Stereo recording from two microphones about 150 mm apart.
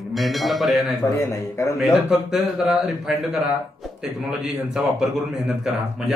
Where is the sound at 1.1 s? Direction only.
20° left (ahead or behind).